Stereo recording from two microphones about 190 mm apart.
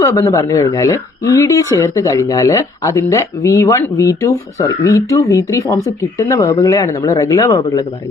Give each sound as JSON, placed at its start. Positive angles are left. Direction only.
{"t": 0.0, "sound": "speech", "side_deg": 15}